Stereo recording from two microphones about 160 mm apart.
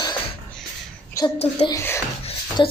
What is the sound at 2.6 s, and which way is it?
Speech, 30° left (ahead or behind).